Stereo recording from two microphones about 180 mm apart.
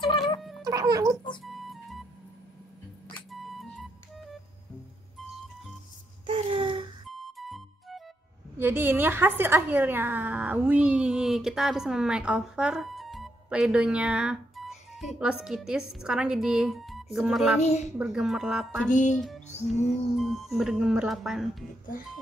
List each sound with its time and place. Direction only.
0.4 s music: centre (ahead or behind)
0.7 s music: 20° right (ahead or behind)
1.4 s music: centre (ahead or behind)
3.2 s music: centre (ahead or behind)
6.2 s a sound: 30° right (ahead or behind)
7.1 s music: centre (ahead or behind)
8.5 s a woman's voice: 10° right (ahead or behind)
17.6 s a woman's voice: 40° left (ahead or behind)
17.9 s a woman's voice: 5° right (ahead or behind)
18.9 s speech: 45° left (ahead or behind)
19.9 s a woman's voice: centre (ahead or behind)